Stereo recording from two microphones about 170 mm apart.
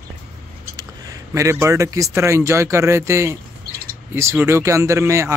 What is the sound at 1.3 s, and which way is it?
Speech, 15° right (ahead or behind).